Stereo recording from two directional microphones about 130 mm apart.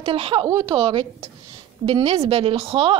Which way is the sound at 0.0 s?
45° right (ahead or behind).